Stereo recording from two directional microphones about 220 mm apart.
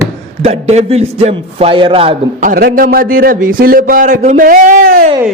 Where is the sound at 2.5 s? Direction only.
40° right (ahead or behind).